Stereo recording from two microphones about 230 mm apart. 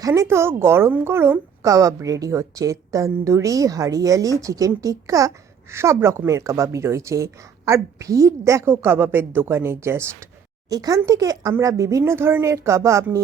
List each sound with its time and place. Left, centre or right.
0.0 s a woman's voice: centre